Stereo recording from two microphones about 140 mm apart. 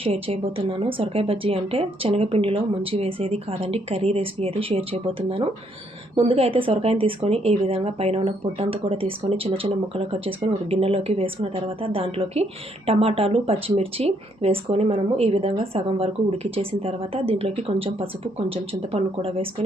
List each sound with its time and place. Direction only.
0.0 s a woman's voice: 40° right (ahead or behind)